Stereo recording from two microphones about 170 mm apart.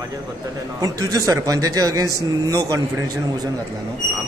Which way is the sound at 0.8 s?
25° right (ahead or behind).